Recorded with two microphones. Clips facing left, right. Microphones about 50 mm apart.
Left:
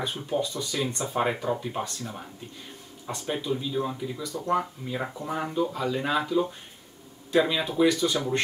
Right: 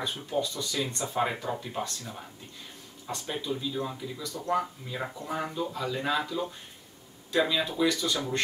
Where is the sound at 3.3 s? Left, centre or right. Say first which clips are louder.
Left 4 dB; centre.